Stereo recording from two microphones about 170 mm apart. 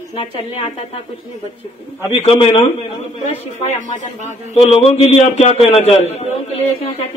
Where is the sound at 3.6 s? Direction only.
45° left (ahead or behind).